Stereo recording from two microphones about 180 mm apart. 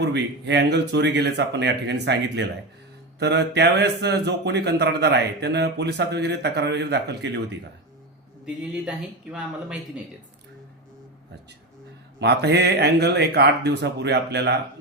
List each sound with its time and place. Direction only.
0.0 s speech: 70° right (ahead or behind)
8.4 s speech: 5° right (ahead or behind)
12.2 s speech: 70° right (ahead or behind)